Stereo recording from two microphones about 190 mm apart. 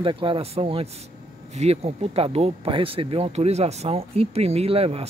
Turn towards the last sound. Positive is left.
turn(degrees=-30)  # may be behind; listen again after turning